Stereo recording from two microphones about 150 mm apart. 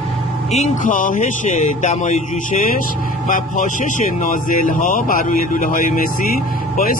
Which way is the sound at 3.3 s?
60° left (ahead or behind).